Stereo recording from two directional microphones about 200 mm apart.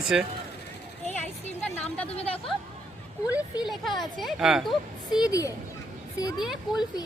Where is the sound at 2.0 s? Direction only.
30° left (ahead or behind).